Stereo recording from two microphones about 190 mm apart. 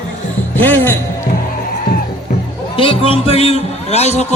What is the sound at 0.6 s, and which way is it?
Music, 10° left (ahead or behind).